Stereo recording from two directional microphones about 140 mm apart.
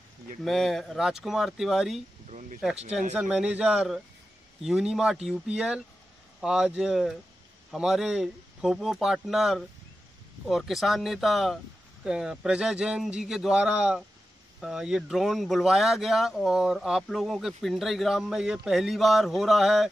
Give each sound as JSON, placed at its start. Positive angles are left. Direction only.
{"t": 0.4, "sound": "speech", "side_deg": 0}
{"t": 2.2, "sound": "speech", "side_deg": -60}
{"t": 3.1, "sound": "a man's voice", "side_deg": -5}